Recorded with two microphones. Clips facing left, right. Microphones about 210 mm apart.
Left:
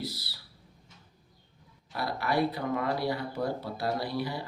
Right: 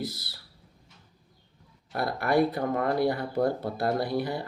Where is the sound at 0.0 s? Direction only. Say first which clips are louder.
Right 3 dB; 50° right (ahead or behind).